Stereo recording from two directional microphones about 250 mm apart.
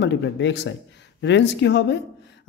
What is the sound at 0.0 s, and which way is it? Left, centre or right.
Speech, left.